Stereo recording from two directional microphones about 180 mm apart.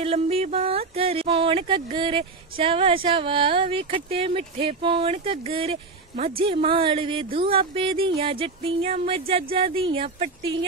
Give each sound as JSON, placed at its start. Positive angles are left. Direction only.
{"t": 0.0, "sound": "speech", "side_deg": -35}